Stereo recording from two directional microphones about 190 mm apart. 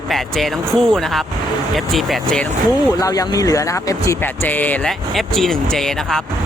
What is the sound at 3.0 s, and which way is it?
Music, 20° left (ahead or behind).